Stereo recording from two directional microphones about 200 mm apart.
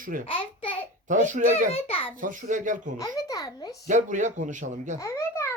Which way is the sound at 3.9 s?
40° right (ahead or behind).